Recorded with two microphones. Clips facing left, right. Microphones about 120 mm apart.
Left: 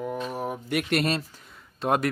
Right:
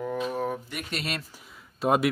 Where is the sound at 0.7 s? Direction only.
60° left (ahead or behind).